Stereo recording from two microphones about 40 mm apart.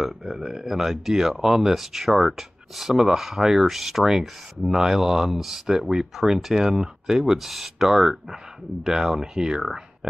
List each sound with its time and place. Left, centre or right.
0.0 s speech: centre